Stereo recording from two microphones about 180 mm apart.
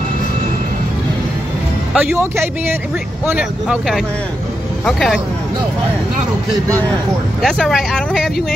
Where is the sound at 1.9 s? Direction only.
Centre (ahead or behind).